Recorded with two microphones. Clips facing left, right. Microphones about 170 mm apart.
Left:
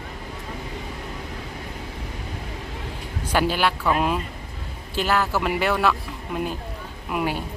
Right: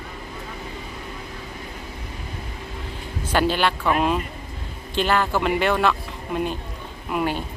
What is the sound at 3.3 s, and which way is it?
Speech, 10° left (ahead or behind).